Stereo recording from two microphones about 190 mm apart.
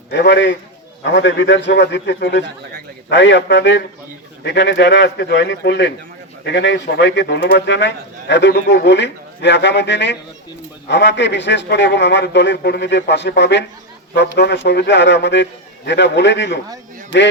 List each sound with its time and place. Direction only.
0.1 s speech: 65° left (ahead or behind)